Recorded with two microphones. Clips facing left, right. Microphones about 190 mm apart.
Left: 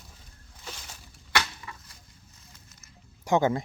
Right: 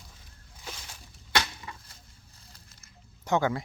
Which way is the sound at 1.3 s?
30° right (ahead or behind).